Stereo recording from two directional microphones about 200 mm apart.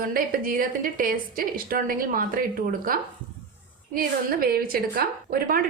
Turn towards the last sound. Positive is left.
turn(degrees=-45)  # may be behind; listen again after turning